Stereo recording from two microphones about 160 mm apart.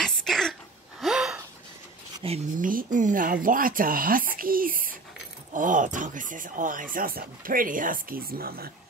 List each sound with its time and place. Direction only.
0.0 s a sound: centre (ahead or behind)
1.0 s gasp: 5° right (ahead or behind)
2.2 s speech: 35° right (ahead or behind)
2.6 s speech: 60° right (ahead or behind)